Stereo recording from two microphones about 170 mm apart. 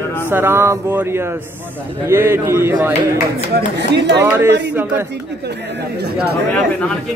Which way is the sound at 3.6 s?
85° right.